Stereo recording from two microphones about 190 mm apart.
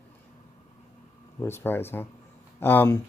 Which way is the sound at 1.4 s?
10° left (ahead or behind).